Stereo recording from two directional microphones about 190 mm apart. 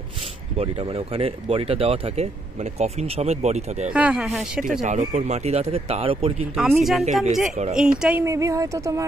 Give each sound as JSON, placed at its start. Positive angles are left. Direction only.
{"t": 0.6, "sound": "speech", "side_deg": -30}
{"t": 3.9, "sound": "speech", "side_deg": -5}
{"t": 4.8, "sound": "speech", "side_deg": -40}
{"t": 6.5, "sound": "a woman's voice", "side_deg": 0}